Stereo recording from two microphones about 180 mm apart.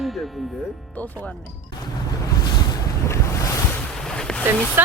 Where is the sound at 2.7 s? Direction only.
15° left (ahead or behind).